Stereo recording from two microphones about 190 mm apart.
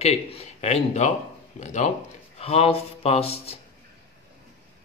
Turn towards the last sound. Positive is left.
turn(degrees=30)  # may be behind; listen again after turning